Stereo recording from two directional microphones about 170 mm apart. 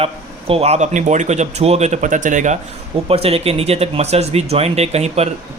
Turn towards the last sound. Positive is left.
turn(degrees=-40)  # may be behind; listen again after turning